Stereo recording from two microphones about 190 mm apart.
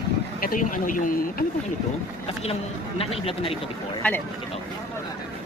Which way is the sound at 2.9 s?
30° left (ahead or behind).